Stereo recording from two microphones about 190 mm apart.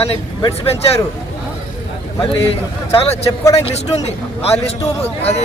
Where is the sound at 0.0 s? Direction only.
30° left (ahead or behind).